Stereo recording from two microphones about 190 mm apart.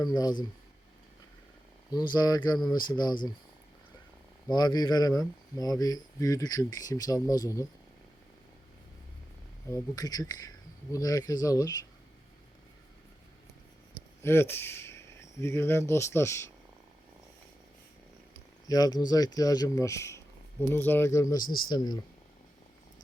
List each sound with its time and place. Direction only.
0.0 s speech: 20° left (ahead or behind)
1.9 s speech: 20° left (ahead or behind)
4.5 s speech: 20° left (ahead or behind)
9.6 s speech: 15° left (ahead or behind)
14.2 s speech: 10° left (ahead or behind)
18.7 s speech: 20° left (ahead or behind)
21.4 s speech: 50° left (ahead or behind)
21.7 s speech: 20° left (ahead or behind)